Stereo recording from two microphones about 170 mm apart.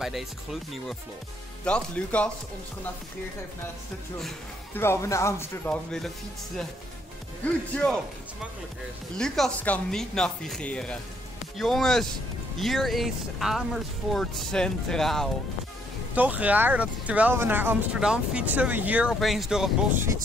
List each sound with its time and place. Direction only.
0.0 s speech: centre (ahead or behind)
4.7 s speech: 15° left (ahead or behind)
5.9 s speech: centre (ahead or behind)
16.2 s speech: 10° right (ahead or behind)